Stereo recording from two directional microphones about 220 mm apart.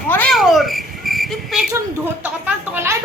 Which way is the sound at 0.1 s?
5° left (ahead or behind).